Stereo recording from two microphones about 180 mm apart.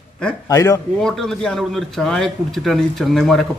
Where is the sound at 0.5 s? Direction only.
15° left (ahead or behind).